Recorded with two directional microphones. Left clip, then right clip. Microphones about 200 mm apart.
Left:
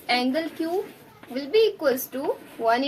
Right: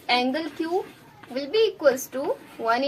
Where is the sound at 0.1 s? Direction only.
20° left (ahead or behind).